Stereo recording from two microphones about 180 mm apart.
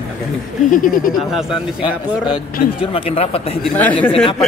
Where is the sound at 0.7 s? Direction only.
50° left (ahead or behind).